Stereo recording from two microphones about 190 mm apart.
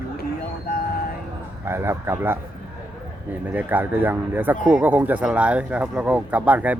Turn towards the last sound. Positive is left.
turn(degrees=-10)  # may be behind; listen again after turning